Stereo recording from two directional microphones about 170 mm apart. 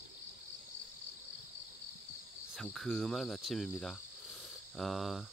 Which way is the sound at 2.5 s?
Centre (ahead or behind).